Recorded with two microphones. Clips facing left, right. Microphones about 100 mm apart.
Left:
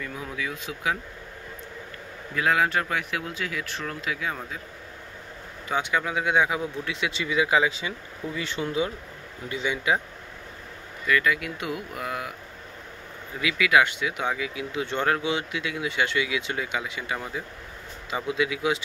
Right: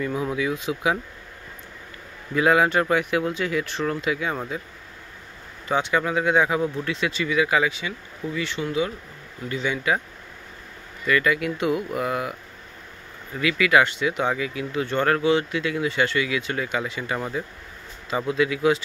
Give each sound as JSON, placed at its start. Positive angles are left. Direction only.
{"t": 0.4, "sound": "speech", "side_deg": -5}
{"t": 2.3, "sound": "speech", "side_deg": -5}
{"t": 5.7, "sound": "speech", "side_deg": 5}
{"t": 7.1, "sound": "speech", "side_deg": 20}
{"t": 8.4, "sound": "speech", "side_deg": 35}
{"t": 9.5, "sound": "speech", "side_deg": 15}
{"t": 11.1, "sound": "speech", "side_deg": 0}
{"t": 13.4, "sound": "speech", "side_deg": 5}